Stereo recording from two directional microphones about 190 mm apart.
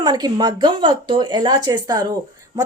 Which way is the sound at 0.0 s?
20° right (ahead or behind).